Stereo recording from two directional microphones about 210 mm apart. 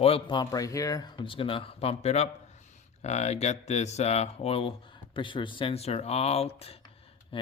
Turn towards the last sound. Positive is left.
turn(degrees=25)  # may be behind; listen again after turning